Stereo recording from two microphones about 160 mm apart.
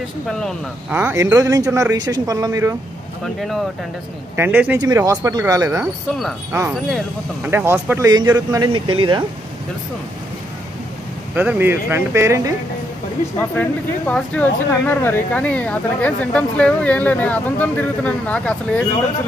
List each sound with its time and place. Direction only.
0.4 s speech: 5° left (ahead or behind)
0.9 s speech: 15° right (ahead or behind)
3.3 s speech: centre (ahead or behind)
4.4 s speech: 10° right (ahead or behind)
7.5 s speech: 15° right (ahead or behind)
8.7 s speech: 35° right (ahead or behind)
11.3 s speech: 10° right (ahead or behind)
13.4 s speech: 10° left (ahead or behind)